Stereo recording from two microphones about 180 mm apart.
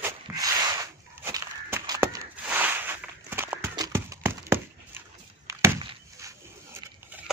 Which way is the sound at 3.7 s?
20° right (ahead or behind).